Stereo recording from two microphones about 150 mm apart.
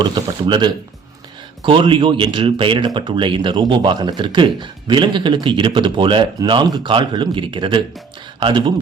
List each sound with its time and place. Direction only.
0.4 s speech: 30° right (ahead or behind)